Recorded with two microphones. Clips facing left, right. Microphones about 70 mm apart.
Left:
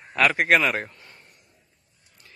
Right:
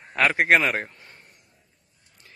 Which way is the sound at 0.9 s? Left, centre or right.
Right.